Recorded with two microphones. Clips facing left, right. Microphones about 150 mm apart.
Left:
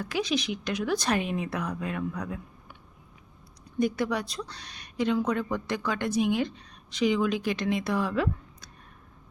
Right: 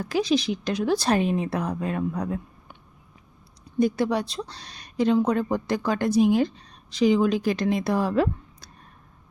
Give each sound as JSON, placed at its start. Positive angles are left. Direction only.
{"t": 0.0, "sound": "a woman's voice", "side_deg": -35}
{"t": 3.8, "sound": "a woman's voice", "side_deg": -30}